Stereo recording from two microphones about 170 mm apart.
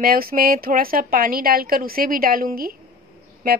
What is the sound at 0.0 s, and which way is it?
A woman's voice, 60° right (ahead or behind).